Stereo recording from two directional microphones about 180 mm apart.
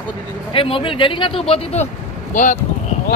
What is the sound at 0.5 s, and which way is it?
Speech, 30° left (ahead or behind).